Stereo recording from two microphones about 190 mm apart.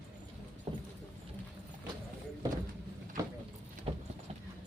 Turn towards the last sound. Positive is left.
turn(degrees=-30)  # may be behind; listen again after turning